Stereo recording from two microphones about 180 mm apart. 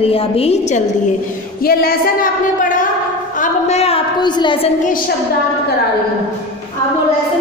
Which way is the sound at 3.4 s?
40° left (ahead or behind).